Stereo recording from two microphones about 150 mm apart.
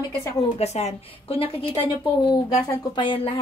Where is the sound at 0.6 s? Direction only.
45° left (ahead or behind).